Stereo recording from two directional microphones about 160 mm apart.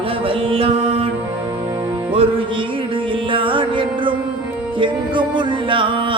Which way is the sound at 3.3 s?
30° right (ahead or behind).